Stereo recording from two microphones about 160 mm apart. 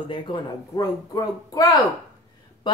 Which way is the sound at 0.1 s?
30° left (ahead or behind).